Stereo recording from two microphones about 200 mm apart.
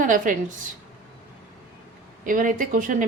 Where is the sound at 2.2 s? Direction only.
40° right (ahead or behind).